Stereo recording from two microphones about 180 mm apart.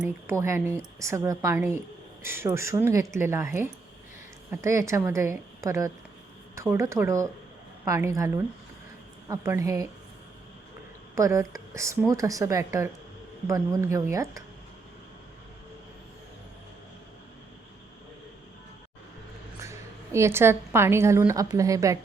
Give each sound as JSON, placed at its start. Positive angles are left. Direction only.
{"t": 0.0, "sound": "a woman's voice", "side_deg": -15}
{"t": 9.3, "sound": "a woman's voice", "side_deg": -15}
{"t": 11.1, "sound": "a woman's voice", "side_deg": -15}
{"t": 20.1, "sound": "a woman's voice", "side_deg": -15}